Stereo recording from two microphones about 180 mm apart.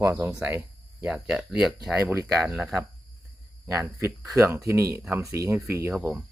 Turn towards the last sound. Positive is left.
turn(degrees=-5)  # may be behind; listen again after turning